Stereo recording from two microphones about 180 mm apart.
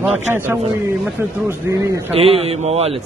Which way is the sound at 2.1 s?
30° right (ahead or behind).